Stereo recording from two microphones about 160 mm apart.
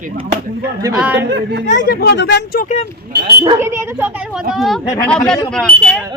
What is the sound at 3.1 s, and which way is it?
Speech, 90° right.